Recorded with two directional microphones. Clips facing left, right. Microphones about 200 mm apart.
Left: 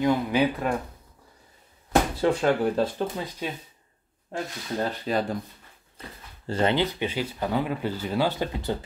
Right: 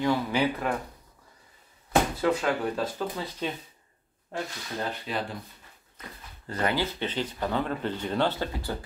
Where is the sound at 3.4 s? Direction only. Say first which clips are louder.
Right 1 dB; 10° left (ahead or behind).